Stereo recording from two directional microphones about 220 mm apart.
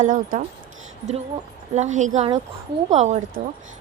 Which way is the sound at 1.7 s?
35° right (ahead or behind).